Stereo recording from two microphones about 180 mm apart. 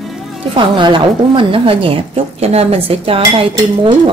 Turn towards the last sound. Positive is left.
turn(degrees=-30)  # may be behind; listen again after turning